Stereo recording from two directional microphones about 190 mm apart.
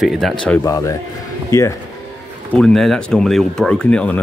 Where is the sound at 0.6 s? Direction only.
15° left (ahead or behind).